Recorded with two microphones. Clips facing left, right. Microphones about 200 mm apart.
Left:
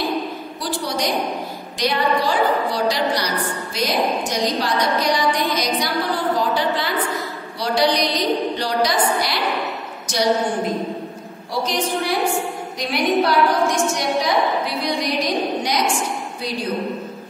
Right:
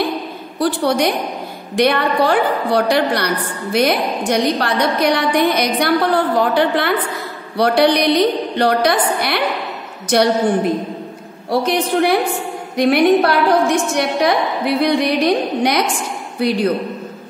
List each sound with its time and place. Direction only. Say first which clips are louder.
0.6 s a woman's voice: right 9 dB; 60° right (ahead or behind)
11.6 s a woman's voice: right 6 dB; 60° right (ahead or behind)